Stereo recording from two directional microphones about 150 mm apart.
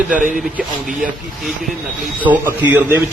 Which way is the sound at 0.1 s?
60° right (ahead or behind).